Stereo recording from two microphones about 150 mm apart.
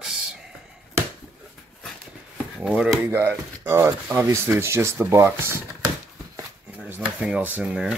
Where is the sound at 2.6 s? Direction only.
5° right (ahead or behind).